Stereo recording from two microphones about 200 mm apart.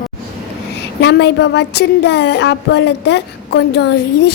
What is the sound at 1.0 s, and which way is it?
Speech, 60° left (ahead or behind).